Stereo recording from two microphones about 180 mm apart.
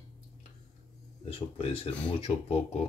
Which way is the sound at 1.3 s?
30° left (ahead or behind).